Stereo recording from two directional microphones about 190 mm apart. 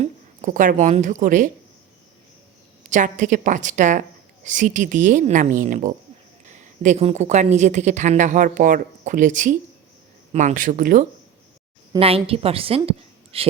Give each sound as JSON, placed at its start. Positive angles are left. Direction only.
{"t": 0.0, "sound": "a woman's voice", "side_deg": -40}
{"t": 2.8, "sound": "a woman's voice", "side_deg": -40}
{"t": 11.9, "sound": "a woman's voice", "side_deg": -30}